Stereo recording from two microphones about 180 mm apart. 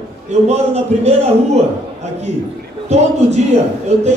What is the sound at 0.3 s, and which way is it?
A man's voice, 35° right (ahead or behind).